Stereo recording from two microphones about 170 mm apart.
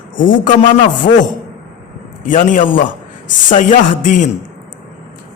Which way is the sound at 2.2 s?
50° left (ahead or behind).